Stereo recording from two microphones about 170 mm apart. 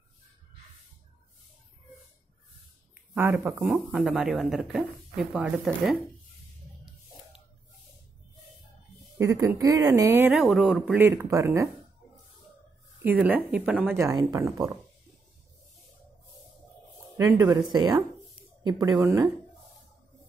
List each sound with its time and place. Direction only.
3.2 s speech: 15° right (ahead or behind)
3.7 s speech: centre (ahead or behind)
9.2 s speech: 20° right (ahead or behind)
10.3 s speech: centre (ahead or behind)
11.0 s speech: 15° right (ahead or behind)
13.2 s speech: 10° right (ahead or behind)
13.9 s speech: 20° right (ahead or behind)
17.2 s speech: 20° right (ahead or behind)